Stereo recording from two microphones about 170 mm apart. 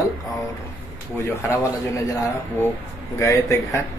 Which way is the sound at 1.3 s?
15° left (ahead or behind).